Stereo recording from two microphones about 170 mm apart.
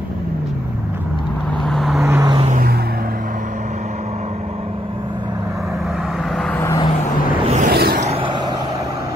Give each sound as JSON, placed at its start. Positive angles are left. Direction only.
{"t": 1.7, "sound": "vehicle", "side_deg": 0}
{"t": 2.0, "sound": "vehicle", "side_deg": -15}
{"t": 6.6, "sound": "vehicle", "side_deg": 15}
{"t": 7.4, "sound": "a sound", "side_deg": -45}
{"t": 7.7, "sound": "a sound", "side_deg": -65}
{"t": 8.0, "sound": "vehicle", "side_deg": -35}